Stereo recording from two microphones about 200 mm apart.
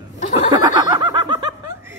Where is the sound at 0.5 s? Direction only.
20° right (ahead or behind).